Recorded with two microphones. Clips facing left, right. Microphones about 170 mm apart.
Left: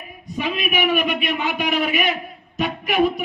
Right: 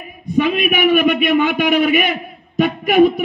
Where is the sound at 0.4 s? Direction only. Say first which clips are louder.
Right 7 dB; 50° right (ahead or behind).